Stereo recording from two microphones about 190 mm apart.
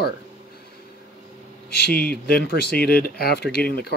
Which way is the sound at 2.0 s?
50° left (ahead or behind).